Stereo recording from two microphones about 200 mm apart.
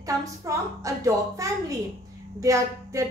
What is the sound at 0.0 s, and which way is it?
A woman's voice, 15° right (ahead or behind).